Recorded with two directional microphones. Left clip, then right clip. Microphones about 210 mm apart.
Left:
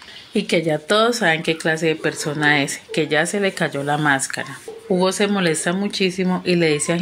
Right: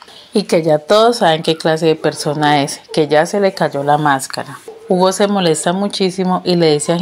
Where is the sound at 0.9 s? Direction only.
15° right (ahead or behind).